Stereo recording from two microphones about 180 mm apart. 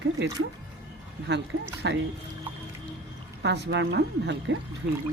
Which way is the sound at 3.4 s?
70° right (ahead or behind).